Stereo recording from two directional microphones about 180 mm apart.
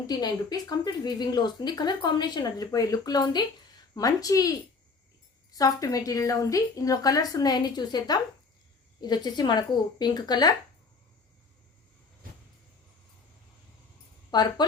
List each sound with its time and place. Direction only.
0.1 s speech: 20° left (ahead or behind)
14.3 s speech: 25° left (ahead or behind)